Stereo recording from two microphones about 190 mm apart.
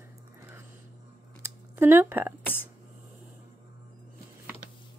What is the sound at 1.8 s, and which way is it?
Speech, 10° right (ahead or behind).